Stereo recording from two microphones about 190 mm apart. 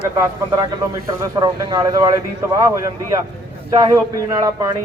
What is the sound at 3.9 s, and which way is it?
Speech, 15° right (ahead or behind).